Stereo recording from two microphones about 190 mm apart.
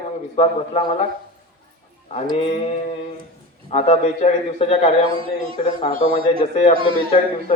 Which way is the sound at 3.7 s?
35° left (ahead or behind).